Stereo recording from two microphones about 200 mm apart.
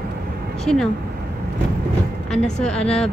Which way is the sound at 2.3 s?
5° left (ahead or behind).